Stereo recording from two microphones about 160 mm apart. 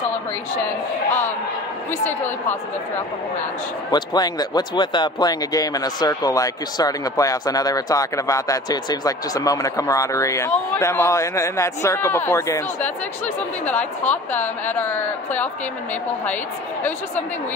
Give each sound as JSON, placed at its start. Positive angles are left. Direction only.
{"t": 1.9, "sound": "speech", "side_deg": 15}
{"t": 3.9, "sound": "speech", "side_deg": 25}